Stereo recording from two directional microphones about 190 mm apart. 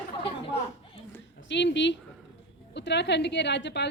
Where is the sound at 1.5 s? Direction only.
65° left (ahead or behind).